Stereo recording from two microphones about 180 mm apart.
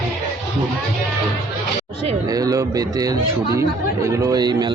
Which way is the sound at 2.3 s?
20° right (ahead or behind).